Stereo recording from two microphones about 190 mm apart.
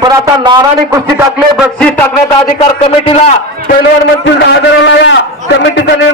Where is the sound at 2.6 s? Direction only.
30° left (ahead or behind).